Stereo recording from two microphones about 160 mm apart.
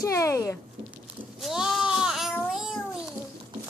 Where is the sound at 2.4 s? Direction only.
Centre (ahead or behind).